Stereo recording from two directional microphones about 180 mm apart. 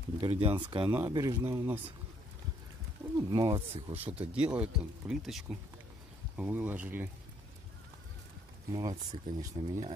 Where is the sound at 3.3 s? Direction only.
30° right (ahead or behind).